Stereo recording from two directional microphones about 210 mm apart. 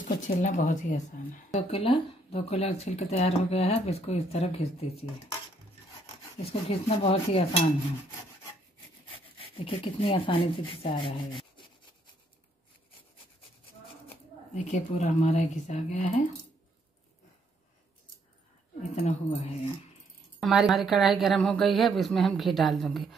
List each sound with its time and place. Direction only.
0.3 s speech: 35° left (ahead or behind)
6.7 s speech: 30° left (ahead or behind)
9.6 s speech: 25° left (ahead or behind)
14.5 s speech: 35° left (ahead or behind)
18.8 s speech: 30° left (ahead or behind)
20.3 s a woman's voice: centre (ahead or behind)